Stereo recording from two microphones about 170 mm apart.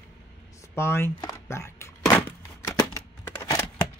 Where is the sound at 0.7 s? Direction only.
15° left (ahead or behind).